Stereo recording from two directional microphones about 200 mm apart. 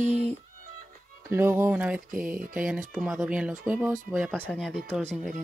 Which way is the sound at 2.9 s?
5° right (ahead or behind).